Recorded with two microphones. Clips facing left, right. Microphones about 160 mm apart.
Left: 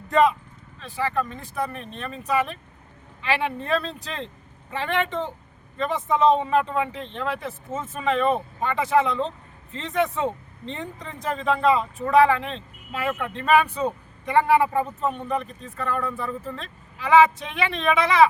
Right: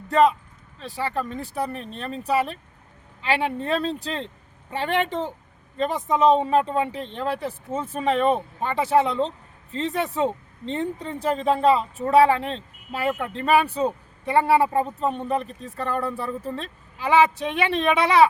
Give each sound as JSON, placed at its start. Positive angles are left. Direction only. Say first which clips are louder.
{"t": 0.8, "sound": "speech", "louder": "left 1 dB", "side_deg": -35}
{"t": 6.3, "sound": "speech", "louder": "right 2 dB", "side_deg": -35}